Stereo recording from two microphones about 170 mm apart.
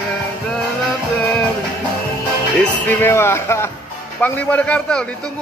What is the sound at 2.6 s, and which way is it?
A man's voice, 10° left (ahead or behind).